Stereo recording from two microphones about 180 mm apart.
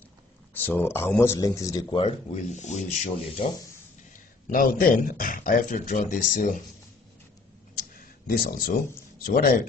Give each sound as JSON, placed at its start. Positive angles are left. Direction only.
{"t": 0.6, "sound": "speech", "side_deg": 10}
{"t": 4.5, "sound": "speech", "side_deg": 50}
{"t": 7.7, "sound": "a sound", "side_deg": 55}